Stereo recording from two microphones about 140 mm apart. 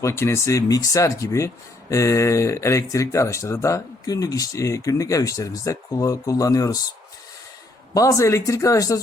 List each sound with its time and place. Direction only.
0.0 s speech: 20° left (ahead or behind)
7.9 s speech: 25° left (ahead or behind)